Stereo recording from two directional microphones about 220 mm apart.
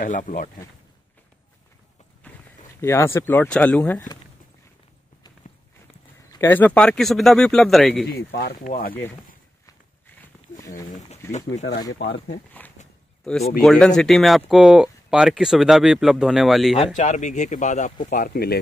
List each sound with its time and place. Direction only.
0.0 s speech: 35° left (ahead or behind)
2.8 s speech: 10° left (ahead or behind)
6.3 s speech: 10° left (ahead or behind)
8.1 s speech: 45° left (ahead or behind)
9.7 s walk: 10° left (ahead or behind)
12.8 s a sound: 35° left (ahead or behind)
13.2 s speech: 5° left (ahead or behind)
16.7 s speech: 30° left (ahead or behind)